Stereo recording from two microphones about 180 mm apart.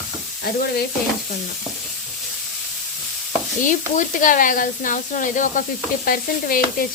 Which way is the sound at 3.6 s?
45° left (ahead or behind).